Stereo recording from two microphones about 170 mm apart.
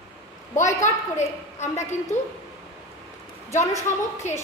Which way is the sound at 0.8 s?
45° left (ahead or behind).